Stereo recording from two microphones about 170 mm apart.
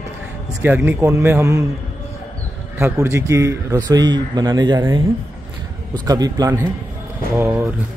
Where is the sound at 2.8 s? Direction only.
15° right (ahead or behind).